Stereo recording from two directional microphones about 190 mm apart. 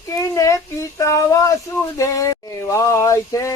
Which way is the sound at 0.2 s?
15° left (ahead or behind).